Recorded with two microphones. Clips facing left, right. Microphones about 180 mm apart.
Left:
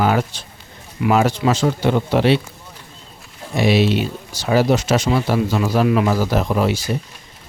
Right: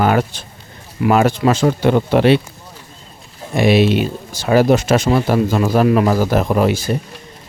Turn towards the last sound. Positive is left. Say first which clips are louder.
# right 3 dB
turn(degrees=-50)  # may be behind; listen again after turning